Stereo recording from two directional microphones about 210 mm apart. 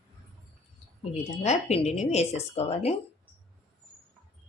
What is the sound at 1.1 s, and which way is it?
A woman's voice, 30° left (ahead or behind).